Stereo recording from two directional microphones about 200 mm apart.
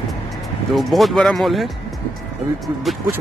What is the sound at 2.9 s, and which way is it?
Speech, centre (ahead or behind).